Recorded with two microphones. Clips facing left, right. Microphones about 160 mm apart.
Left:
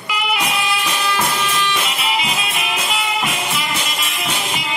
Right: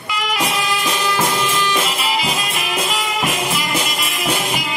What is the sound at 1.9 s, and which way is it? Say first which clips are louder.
Music: right 1 dB; centre (ahead or behind).